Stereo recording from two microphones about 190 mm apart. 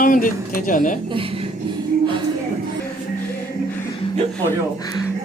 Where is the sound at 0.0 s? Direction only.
45° left (ahead or behind).